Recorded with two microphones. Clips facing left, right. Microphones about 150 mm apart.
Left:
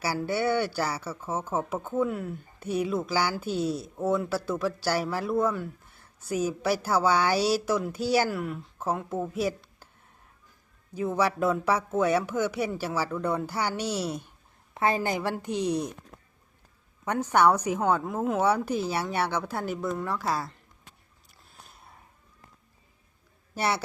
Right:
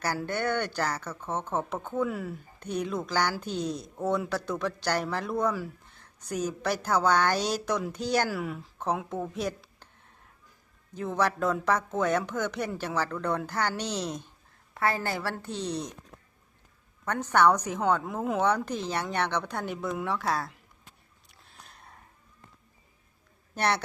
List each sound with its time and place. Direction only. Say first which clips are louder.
0.2 s a woman's voice: left 3 dB; 10° left (ahead or behind)
10.9 s a woman's voice: left 2 dB; 5° left (ahead or behind)
14.7 s a woman's voice: left 3 dB; 20° left (ahead or behind)
17.1 s a woman's voice: left 1 dB; 10° left (ahead or behind)
21.2 s a sound: even; centre (ahead or behind)
23.6 s a man's voice: even; 5° left (ahead or behind)